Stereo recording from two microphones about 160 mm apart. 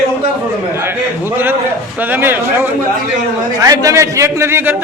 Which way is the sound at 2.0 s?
10° right (ahead or behind).